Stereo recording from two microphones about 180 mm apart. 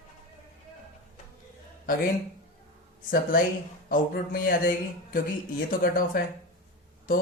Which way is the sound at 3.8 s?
55° left (ahead or behind).